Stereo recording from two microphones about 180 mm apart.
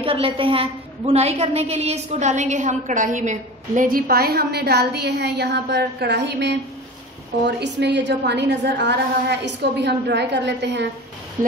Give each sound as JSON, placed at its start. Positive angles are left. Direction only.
{"t": 0.0, "sound": "a woman's voice", "side_deg": -30}
{"t": 11.4, "sound": "a woman's voice", "side_deg": -45}